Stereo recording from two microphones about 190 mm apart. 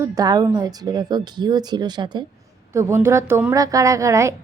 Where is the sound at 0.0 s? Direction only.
20° right (ahead or behind).